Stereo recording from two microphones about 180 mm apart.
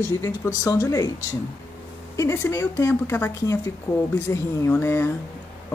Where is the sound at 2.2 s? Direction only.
15° left (ahead or behind).